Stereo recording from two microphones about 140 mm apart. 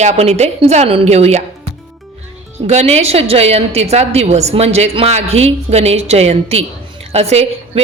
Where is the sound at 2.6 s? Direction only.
50° right (ahead or behind).